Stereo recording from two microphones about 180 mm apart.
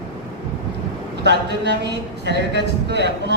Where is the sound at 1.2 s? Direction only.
70° right (ahead or behind).